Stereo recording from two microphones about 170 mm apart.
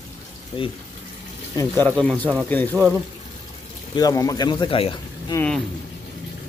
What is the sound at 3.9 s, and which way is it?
Speech, 20° left (ahead or behind).